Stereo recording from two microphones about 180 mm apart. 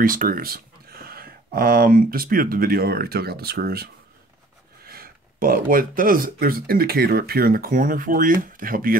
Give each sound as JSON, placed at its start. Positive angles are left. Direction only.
{"t": 0.0, "sound": "speech", "side_deg": -50}